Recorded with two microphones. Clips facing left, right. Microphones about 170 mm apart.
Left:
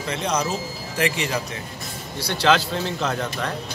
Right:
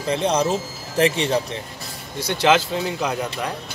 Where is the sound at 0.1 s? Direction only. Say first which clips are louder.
Right 5 dB; 30° right (ahead or behind).